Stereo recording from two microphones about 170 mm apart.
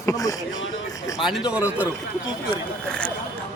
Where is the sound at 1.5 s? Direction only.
10° right (ahead or behind).